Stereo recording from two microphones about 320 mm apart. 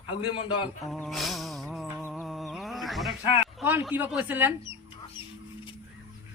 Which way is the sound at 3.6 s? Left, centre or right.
Centre.